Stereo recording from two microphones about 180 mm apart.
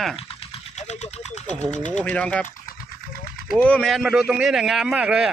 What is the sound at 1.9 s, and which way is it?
Speech, 10° left (ahead or behind).